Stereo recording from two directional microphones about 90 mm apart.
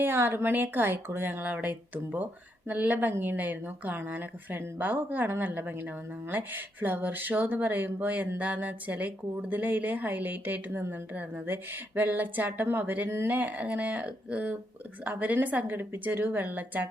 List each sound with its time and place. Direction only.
0.0 s a woman's voice: 25° right (ahead or behind)